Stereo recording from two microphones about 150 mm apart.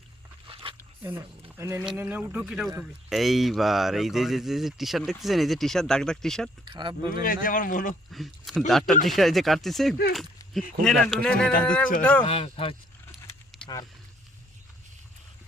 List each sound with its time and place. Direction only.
0.4 s a sound: 35° right (ahead or behind)
1.5 s speech: 15° right (ahead or behind); by 6.5 s 5° left (ahead or behind)
6.7 s speech: 30° right (ahead or behind)
7.1 s speech: 70° left (ahead or behind)
8.1 s speech: centre (ahead or behind)
12.2 s speech: 40° left (ahead or behind)
13.6 s a sound: 5° left (ahead or behind)